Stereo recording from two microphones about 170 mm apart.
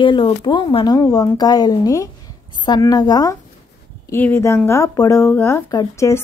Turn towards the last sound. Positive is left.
turn(degrees=15)  # may be behind; listen again after turning